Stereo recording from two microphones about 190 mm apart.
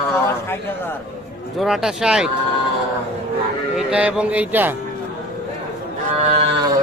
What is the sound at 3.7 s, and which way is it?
Speech, 5° right (ahead or behind).